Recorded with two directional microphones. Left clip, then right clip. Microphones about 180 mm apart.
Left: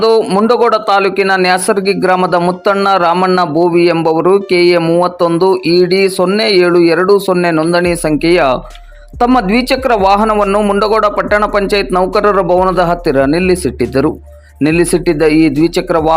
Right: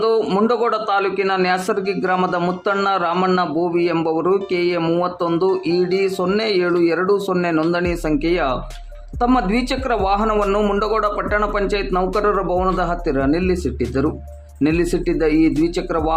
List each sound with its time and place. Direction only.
0.2 s a man's voice: 20° left (ahead or behind)
10.3 s a man's voice: 20° left (ahead or behind)
10.8 s speech: 30° left (ahead or behind)